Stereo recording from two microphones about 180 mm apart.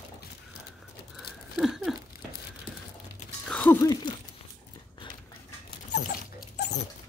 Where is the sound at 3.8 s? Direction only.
20° left (ahead or behind).